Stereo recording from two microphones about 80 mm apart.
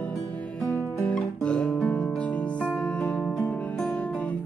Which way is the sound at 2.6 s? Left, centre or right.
Centre.